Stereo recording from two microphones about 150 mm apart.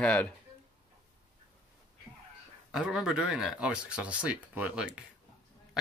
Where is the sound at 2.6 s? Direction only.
5° right (ahead or behind).